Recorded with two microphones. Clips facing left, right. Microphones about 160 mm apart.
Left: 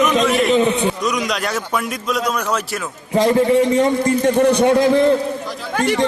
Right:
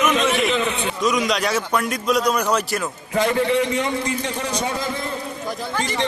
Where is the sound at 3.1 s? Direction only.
35° left (ahead or behind); by 5.9 s 60° left (ahead or behind).